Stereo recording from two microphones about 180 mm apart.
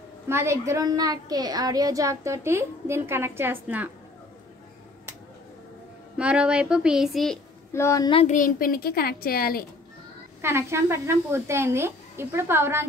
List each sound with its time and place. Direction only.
0.3 s a woman's voice: 15° right (ahead or behind)
6.1 s speech: 5° right (ahead or behind)
7.7 s speech: 15° left (ahead or behind)
8.1 s speech: 35° left (ahead or behind)
8.4 s a woman's voice: 50° left (ahead or behind)
10.4 s a woman's voice: 15° right (ahead or behind)